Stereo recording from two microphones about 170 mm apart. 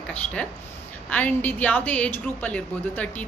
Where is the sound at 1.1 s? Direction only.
10° left (ahead or behind).